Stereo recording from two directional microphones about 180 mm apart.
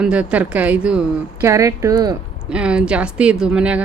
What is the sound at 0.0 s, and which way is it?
Speech, 5° right (ahead or behind).